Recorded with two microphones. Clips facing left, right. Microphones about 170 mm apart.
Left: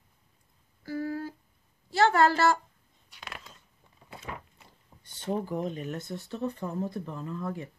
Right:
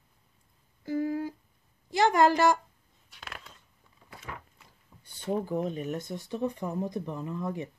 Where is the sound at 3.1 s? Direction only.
Centre (ahead or behind).